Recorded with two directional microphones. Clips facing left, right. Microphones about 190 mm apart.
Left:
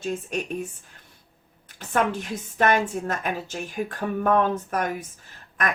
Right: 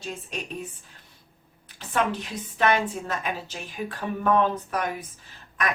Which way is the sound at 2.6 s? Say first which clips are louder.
Left 2 dB; 50° left (ahead or behind).